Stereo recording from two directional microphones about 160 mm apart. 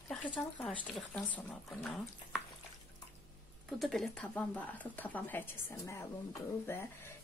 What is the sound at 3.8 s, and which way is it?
Speech, centre (ahead or behind).